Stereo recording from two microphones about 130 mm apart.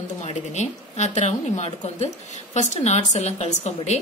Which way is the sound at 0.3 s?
65° left (ahead or behind).